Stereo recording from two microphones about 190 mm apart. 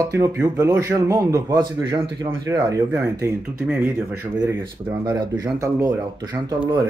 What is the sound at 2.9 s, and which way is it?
A man's voice, 10° right (ahead or behind).